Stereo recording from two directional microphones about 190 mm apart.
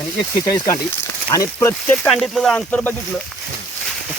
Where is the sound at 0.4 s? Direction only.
20° left (ahead or behind).